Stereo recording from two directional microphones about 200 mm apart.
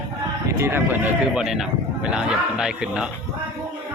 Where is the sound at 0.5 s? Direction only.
10° right (ahead or behind).